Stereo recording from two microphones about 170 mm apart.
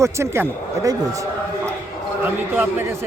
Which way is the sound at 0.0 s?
15° right (ahead or behind).